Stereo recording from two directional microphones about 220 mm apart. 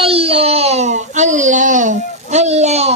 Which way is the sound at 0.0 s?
25° right (ahead or behind).